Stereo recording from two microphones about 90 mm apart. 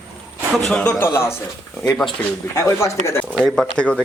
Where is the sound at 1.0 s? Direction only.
30° left (ahead or behind).